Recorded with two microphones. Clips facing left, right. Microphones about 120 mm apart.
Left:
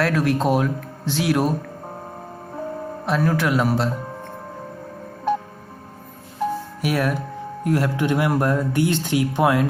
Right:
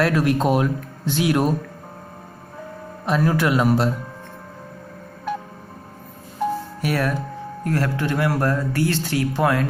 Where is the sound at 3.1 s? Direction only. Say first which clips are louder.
Right 1 dB; centre (ahead or behind).